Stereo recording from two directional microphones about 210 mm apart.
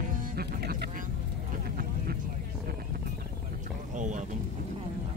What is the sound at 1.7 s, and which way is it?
Vehicle, 45° right (ahead or behind).